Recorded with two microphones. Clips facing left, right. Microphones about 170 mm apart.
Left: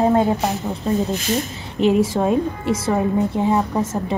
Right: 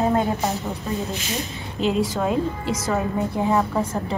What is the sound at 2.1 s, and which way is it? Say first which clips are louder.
A woman's voice: left 4 dB; 25° left (ahead or behind).